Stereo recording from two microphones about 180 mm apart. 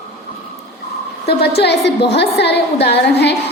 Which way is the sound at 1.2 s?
65° left (ahead or behind).